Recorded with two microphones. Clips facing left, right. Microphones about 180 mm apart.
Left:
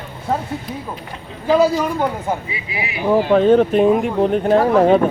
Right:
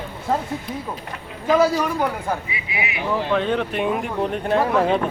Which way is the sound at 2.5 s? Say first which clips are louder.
Left 2 dB; 30° left (ahead or behind).